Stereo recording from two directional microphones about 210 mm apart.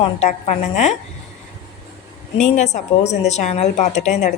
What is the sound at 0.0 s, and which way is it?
Speech, 30° left (ahead or behind).